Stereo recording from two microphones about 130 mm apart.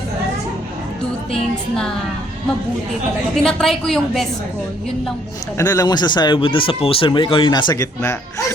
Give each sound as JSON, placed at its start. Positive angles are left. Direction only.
{"t": 1.3, "sound": "a woman's voice", "side_deg": 5}
{"t": 3.4, "sound": "a woman's voice", "side_deg": 5}
{"t": 5.5, "sound": "speech", "side_deg": 25}